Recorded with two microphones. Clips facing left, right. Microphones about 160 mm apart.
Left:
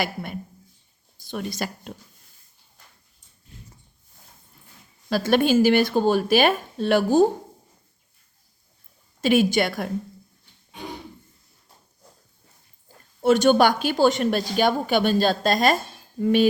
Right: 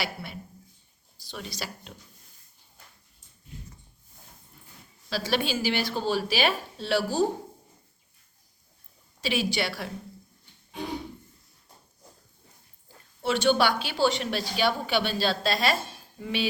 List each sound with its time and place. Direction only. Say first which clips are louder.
0.0 s speech: left 6 dB; 50° left (ahead or behind)
5.0 s speech: left 8 dB; 50° left (ahead or behind)
9.2 s speech: left 9 dB; 50° left (ahead or behind)
13.2 s speech: left 7 dB; 45° left (ahead or behind)